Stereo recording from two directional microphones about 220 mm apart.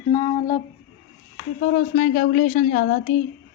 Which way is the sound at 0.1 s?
25° left (ahead or behind).